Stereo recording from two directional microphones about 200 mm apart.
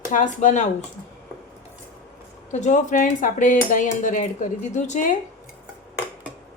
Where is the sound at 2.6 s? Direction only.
40° left (ahead or behind).